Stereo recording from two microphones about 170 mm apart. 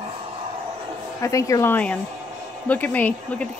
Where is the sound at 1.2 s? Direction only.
20° left (ahead or behind).